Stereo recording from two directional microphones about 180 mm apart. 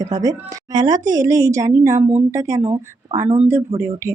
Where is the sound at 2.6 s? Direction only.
30° right (ahead or behind).